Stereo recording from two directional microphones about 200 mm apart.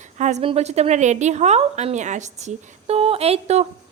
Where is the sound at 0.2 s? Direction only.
35° right (ahead or behind).